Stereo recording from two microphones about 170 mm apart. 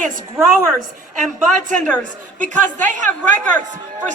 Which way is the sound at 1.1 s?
50° right (ahead or behind).